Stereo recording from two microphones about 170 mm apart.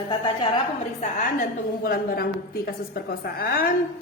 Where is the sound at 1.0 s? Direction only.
50° left (ahead or behind).